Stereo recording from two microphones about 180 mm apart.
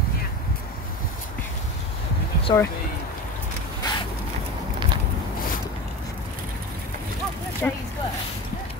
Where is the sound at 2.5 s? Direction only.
20° left (ahead or behind).